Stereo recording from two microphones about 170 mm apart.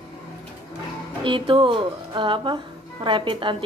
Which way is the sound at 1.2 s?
30° right (ahead or behind).